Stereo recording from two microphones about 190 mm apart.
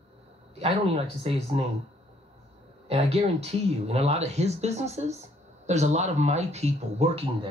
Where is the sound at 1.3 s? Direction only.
30° right (ahead or behind).